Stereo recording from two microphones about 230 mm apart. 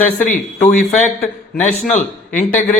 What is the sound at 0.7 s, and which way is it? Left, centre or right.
Speech, left.